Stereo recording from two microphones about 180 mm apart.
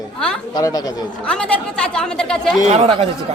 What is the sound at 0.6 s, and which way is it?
Speech, 20° left (ahead or behind).